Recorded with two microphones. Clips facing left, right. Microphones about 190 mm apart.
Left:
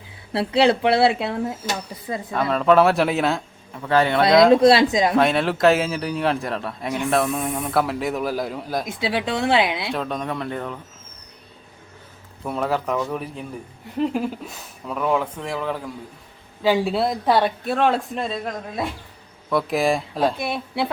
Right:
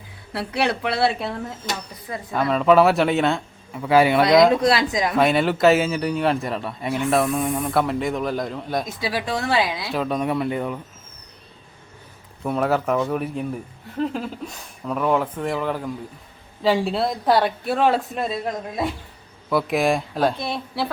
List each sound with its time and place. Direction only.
0.3 s speech: 25° left (ahead or behind)
2.3 s a man's voice: centre (ahead or behind)
4.5 s speech: 25° left (ahead or behind)
5.1 s a man's voice: centre (ahead or behind)
9.0 s speech: 25° left (ahead or behind)
9.9 s speech: 5° right (ahead or behind)
12.4 s a man's voice: centre (ahead or behind)
14.0 s a man's voice: 10° left (ahead or behind)
19.5 s a man's voice: centre (ahead or behind)